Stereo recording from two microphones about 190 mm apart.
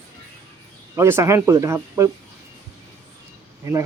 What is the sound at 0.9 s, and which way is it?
Speech, 15° right (ahead or behind).